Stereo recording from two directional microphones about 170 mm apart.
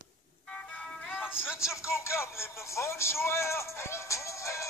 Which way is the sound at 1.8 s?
15° left (ahead or behind).